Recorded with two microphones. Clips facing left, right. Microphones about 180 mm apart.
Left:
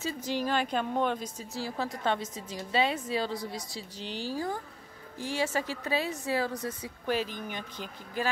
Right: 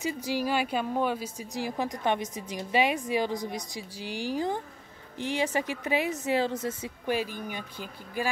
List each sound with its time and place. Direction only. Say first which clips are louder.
0.0 s speech: right 2 dB; 10° right (ahead or behind)
7.2 s speech: right 1 dB; 10° right (ahead or behind)